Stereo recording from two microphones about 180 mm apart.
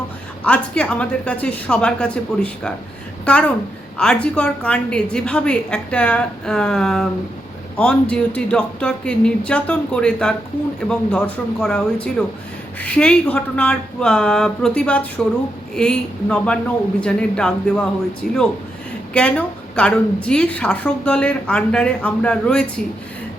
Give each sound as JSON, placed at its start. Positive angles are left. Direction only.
{"t": 0.4, "sound": "a woman's voice", "side_deg": 5}
{"t": 18.2, "sound": "speech", "side_deg": 55}
{"t": 19.1, "sound": "a woman's voice", "side_deg": 5}